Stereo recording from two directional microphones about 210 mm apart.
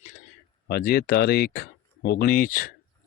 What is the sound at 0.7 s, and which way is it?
Speech, 45° left (ahead or behind).